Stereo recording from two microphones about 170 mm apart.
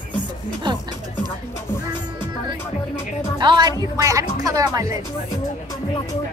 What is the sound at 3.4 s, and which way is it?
Speech, 25° right (ahead or behind).